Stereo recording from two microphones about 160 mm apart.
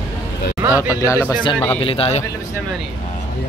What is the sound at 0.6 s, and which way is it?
Speech, 10° right (ahead or behind).